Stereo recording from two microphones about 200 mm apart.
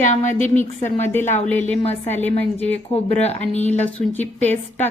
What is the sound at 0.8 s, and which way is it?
Speech, 10° left (ahead or behind).